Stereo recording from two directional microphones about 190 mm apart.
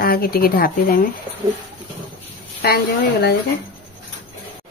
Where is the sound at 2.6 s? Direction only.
55° left (ahead or behind).